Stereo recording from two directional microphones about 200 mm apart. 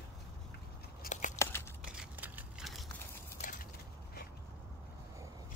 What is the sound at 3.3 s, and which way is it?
Crushing, 40° left (ahead or behind).